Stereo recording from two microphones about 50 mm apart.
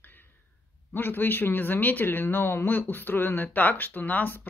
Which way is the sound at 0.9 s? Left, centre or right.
Left.